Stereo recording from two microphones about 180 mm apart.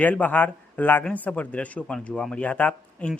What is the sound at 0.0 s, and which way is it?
A man's voice, 10° left (ahead or behind).